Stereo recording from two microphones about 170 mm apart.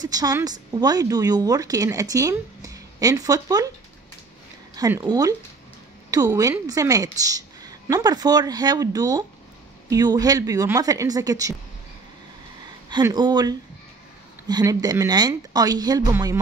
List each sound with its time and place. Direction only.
0.0 s a woman's voice: 20° right (ahead or behind)
4.7 s a woman's voice: 20° right (ahead or behind)
13.0 s a woman's voice: 25° right (ahead or behind)